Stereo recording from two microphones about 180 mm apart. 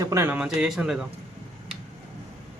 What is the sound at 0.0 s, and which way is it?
A man's voice, 15° right (ahead or behind).